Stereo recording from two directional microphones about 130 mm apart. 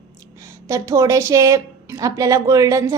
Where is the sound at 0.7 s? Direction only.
25° right (ahead or behind).